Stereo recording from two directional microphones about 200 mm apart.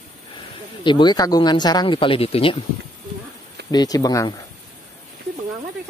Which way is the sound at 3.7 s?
20° left (ahead or behind).